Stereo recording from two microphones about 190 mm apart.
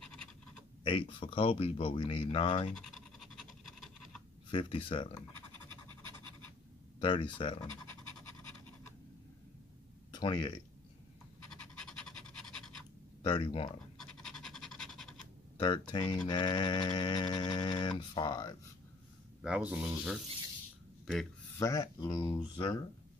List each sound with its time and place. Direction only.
0.0 s scratch: 5° left (ahead or behind)
0.8 s speech: 25° left (ahead or behind)
2.7 s scratch: centre (ahead or behind)
4.5 s speech: 25° left (ahead or behind)
7.0 s speech: 25° left (ahead or behind)
10.1 s speech: 20° left (ahead or behind)
11.5 s pant: 5° left (ahead or behind)
13.2 s speech: 25° left (ahead or behind)
13.9 s scratch: centre (ahead or behind)
15.6 s speech: 25° left (ahead or behind)
19.4 s speech: 5° right (ahead or behind)
21.5 s speech: 15° left (ahead or behind)